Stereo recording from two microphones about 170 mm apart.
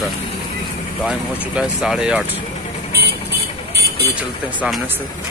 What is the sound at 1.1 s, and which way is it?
Speech, 5° right (ahead or behind).